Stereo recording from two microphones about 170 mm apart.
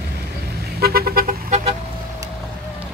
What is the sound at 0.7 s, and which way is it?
Vehicle, 65° right (ahead or behind).